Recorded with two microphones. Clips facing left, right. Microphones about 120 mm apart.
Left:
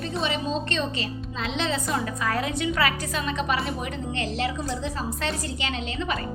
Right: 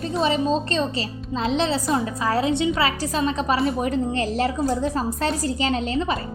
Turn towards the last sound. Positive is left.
turn(degrees=-35)  # may be behind; listen again after turning